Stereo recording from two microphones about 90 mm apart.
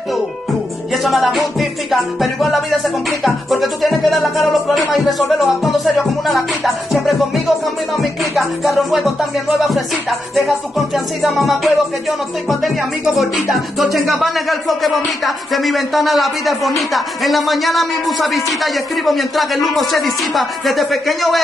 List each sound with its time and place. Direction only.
0.9 s music: centre (ahead or behind)
11.2 s speech: centre (ahead or behind)